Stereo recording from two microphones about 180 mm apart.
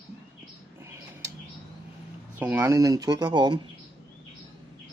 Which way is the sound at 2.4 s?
10° right (ahead or behind).